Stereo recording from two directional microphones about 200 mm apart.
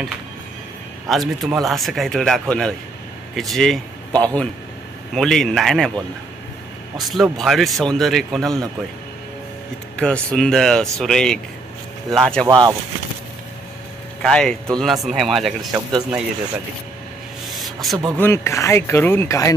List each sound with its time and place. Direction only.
1.0 s speech: centre (ahead or behind)
9.9 s speech: 5° left (ahead or behind)
12.4 s speech: 20° right (ahead or behind)
14.2 s speech: 5° left (ahead or behind)
17.5 s a sound: centre (ahead or behind)
18.1 s speech: 10° left (ahead or behind)